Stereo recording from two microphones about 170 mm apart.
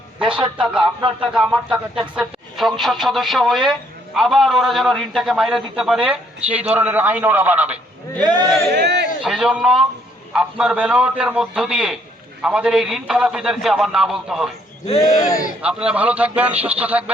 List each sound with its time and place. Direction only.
0.6 s speech: centre (ahead or behind)
8.2 s a man's voice: 25° right (ahead or behind)
8.7 s speech: 85° right
9.2 s speech: 5° right (ahead or behind)
15.0 s speech: 55° left (ahead or behind)
15.6 s a man's voice: 5° right (ahead or behind)